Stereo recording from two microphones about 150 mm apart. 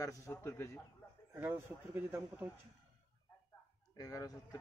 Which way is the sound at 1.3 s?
15° right (ahead or behind).